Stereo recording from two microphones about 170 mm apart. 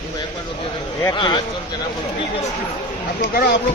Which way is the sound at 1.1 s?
30° left (ahead or behind).